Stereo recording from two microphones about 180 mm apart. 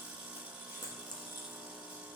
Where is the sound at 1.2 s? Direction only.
5° right (ahead or behind).